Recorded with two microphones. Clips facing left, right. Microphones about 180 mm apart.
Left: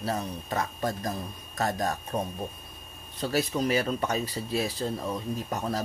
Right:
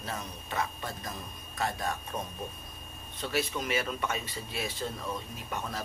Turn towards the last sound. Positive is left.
turn(degrees=40)  # may be behind; listen again after turning